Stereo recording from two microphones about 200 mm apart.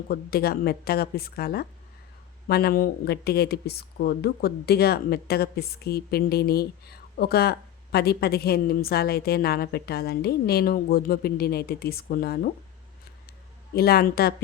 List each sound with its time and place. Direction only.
0.1 s a woman's voice: 50° left (ahead or behind)
13.7 s a woman's voice: 50° left (ahead or behind)